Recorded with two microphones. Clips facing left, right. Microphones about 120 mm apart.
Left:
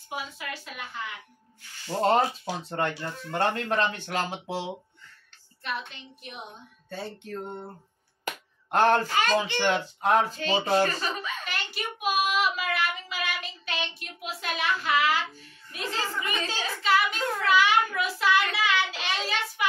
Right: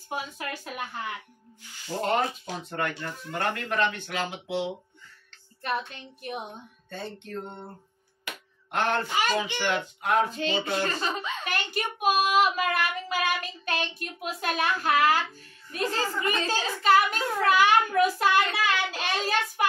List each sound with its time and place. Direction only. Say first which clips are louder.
0.1 s child singing: right 2 dB; 45° right (ahead or behind)
2.0 s speech: left 4 dB; 35° left (ahead or behind)
6.9 s speech: left 1 dB; 5° left (ahead or behind)
8.3 s finger snapping: left 6 dB; 40° left (ahead or behind)
9.1 s speech: left 2 dB; 10° right (ahead or behind)
9.6 s speech: left 3 dB; 35° left (ahead or behind)
11.0 s a child's voice: right 2 dB; 30° right (ahead or behind)
11.4 s child singing: right 4 dB; 50° right (ahead or behind)